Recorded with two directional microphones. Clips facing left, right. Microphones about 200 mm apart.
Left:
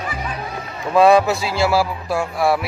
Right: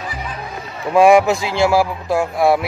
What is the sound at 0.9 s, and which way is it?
A man's voice, 15° right (ahead or behind).